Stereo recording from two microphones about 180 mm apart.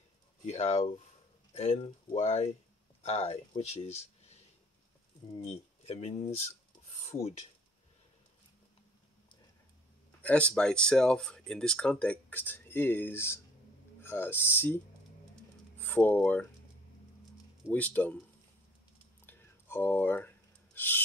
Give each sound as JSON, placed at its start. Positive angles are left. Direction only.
{"t": 0.5, "sound": "speech", "side_deg": 40}
{"t": 5.4, "sound": "speech", "side_deg": 35}
{"t": 10.2, "sound": "speech", "side_deg": 5}
{"t": 15.8, "sound": "speech", "side_deg": 10}
{"t": 17.6, "sound": "speech", "side_deg": 10}
{"t": 19.2, "sound": "rub", "side_deg": 10}